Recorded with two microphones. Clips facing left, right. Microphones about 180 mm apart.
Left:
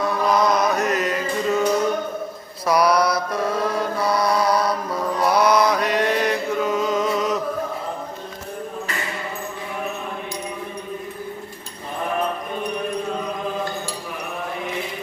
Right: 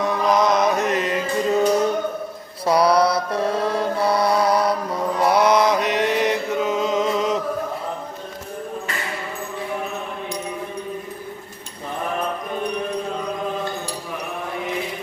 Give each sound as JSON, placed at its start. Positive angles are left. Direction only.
{"t": 0.0, "sound": "music", "side_deg": -20}
{"t": 2.6, "sound": "mantra", "side_deg": -30}